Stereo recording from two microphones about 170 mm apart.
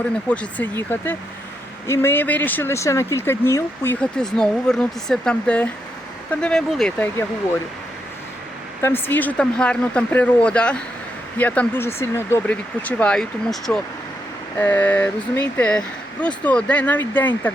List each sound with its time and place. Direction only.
0.3 s speech: 10° left (ahead or behind)
8.8 s speech: 10° left (ahead or behind)